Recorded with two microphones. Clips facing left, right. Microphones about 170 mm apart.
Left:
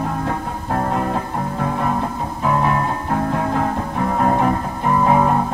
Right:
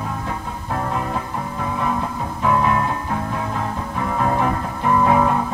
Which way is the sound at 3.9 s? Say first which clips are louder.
Left 2 dB; 40° left (ahead or behind).